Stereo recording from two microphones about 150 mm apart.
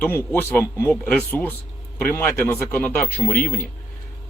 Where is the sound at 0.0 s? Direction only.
10° left (ahead or behind).